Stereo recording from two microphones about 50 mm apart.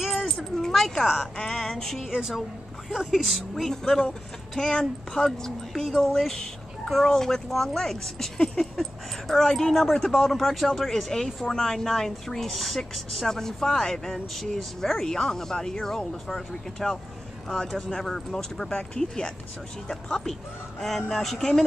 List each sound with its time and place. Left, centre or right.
0.2 s a sound: centre
1.5 s music: centre
2.0 s a woman's voice: centre
3.7 s speech: centre